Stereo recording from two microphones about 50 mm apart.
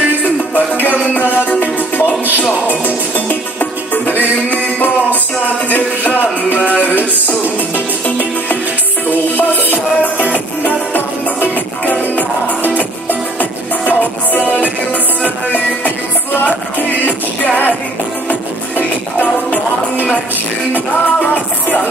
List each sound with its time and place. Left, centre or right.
0.2 s music: left
3.9 s music: left
6.5 s a sound: left
9.7 s music: left
14.3 s music: left
20.7 s music: left